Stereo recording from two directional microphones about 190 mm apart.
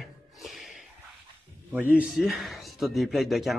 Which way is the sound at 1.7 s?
5° right (ahead or behind).